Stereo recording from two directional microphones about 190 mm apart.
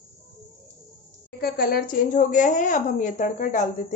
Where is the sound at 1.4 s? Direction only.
50° left (ahead or behind).